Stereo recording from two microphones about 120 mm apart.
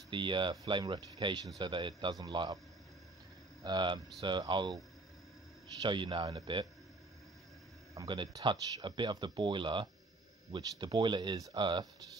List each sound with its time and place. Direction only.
0.1 s speech: 40° right (ahead or behind)
3.6 s speech: 40° right (ahead or behind)
5.8 s a man's voice: 40° right (ahead or behind)
8.4 s speech: 40° right (ahead or behind)